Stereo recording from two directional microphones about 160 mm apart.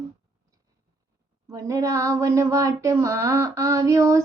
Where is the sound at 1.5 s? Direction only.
20° right (ahead or behind).